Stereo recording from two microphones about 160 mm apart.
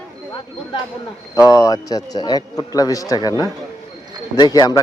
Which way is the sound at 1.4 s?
20° left (ahead or behind).